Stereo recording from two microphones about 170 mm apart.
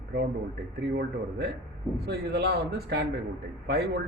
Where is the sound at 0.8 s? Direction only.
70° right (ahead or behind).